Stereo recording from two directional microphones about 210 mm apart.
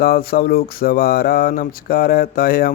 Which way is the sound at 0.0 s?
45° left (ahead or behind).